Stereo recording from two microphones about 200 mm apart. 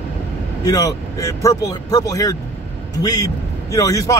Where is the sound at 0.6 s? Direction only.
20° left (ahead or behind).